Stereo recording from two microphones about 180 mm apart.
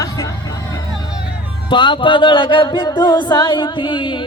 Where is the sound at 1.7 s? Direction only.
25° left (ahead or behind).